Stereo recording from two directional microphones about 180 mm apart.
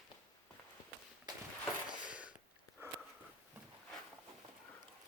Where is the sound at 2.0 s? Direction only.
5° right (ahead or behind).